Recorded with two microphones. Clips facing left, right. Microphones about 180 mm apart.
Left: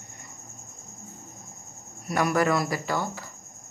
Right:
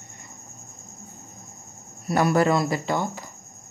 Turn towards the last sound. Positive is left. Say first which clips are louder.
# right 3 dB
turn(degrees=-20)  # may be behind; listen again after turning